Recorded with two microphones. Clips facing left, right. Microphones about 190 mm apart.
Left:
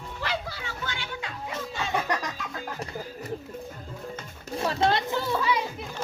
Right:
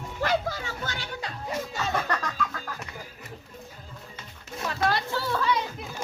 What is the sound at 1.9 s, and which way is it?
Music, 15° left (ahead or behind).